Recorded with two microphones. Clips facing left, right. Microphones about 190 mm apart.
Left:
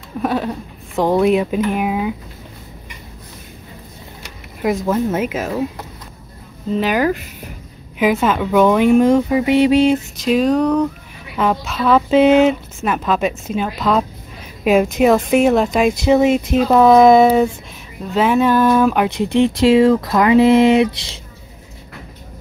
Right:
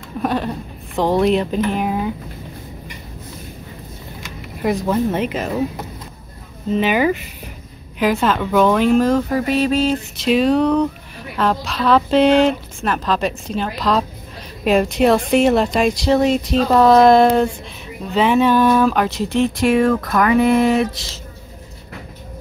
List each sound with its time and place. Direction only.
0.2 s a woman's voice: 5° left (ahead or behind)
4.6 s a woman's voice: centre (ahead or behind)
6.8 s a woman's voice: centre (ahead or behind); by 9.9 s 15° left (ahead or behind)
10.2 s a woman's voice: centre (ahead or behind)
19.0 s speech: 60° left (ahead or behind)
19.4 s speech: 20° left (ahead or behind)